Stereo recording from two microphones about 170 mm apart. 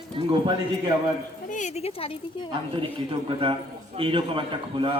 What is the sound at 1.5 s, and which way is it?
Speech, 45° left (ahead or behind).